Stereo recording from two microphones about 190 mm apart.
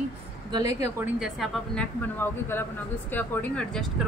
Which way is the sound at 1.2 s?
Centre (ahead or behind).